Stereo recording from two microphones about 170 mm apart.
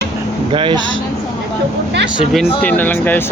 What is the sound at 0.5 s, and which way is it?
Speech, 30° right (ahead or behind).